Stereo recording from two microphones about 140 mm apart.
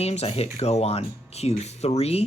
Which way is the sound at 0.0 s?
50° left (ahead or behind).